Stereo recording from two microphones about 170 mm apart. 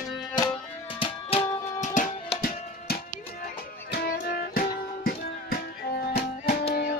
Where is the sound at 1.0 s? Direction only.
30° left (ahead or behind).